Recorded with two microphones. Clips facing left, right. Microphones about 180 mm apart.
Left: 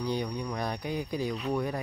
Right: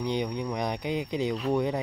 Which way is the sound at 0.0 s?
20° right (ahead or behind).